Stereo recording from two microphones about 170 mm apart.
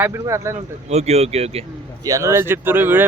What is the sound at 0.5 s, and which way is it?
Speech, 40° right (ahead or behind).